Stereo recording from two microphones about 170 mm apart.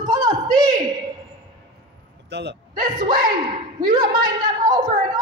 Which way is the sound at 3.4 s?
25° right (ahead or behind).